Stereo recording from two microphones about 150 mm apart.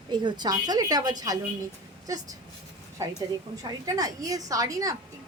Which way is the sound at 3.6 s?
25° right (ahead or behind).